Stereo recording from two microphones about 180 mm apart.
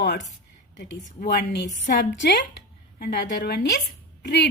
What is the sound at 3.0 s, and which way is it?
Speech, 65° left (ahead or behind).